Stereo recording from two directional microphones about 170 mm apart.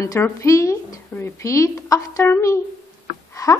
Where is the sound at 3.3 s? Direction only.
20° left (ahead or behind).